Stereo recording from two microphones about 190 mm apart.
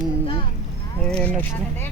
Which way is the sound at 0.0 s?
30° left (ahead or behind).